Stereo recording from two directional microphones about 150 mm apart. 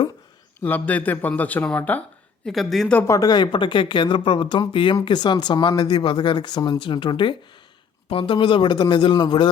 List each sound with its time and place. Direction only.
0.6 s speech: 10° left (ahead or behind)
3.1 s speech: 25° left (ahead or behind)